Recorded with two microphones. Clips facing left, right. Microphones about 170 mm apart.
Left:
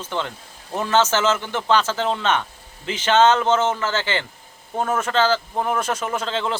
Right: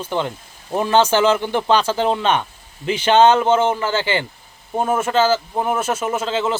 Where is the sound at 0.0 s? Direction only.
15° right (ahead or behind).